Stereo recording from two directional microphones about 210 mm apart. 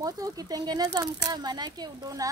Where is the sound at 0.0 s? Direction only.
15° right (ahead or behind).